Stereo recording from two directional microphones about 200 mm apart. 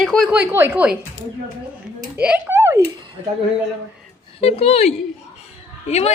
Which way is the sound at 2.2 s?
5° right (ahead or behind).